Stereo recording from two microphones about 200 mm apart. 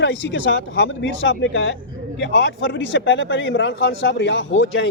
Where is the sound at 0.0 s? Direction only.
65° left (ahead or behind).